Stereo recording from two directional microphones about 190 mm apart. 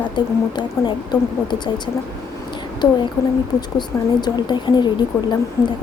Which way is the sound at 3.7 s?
25° left (ahead or behind).